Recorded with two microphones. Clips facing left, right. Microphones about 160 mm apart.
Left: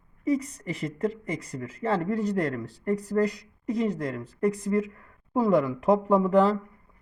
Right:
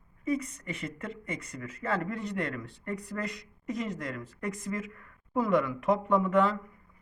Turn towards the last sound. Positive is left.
turn(degrees=35)  # may be behind; listen again after turning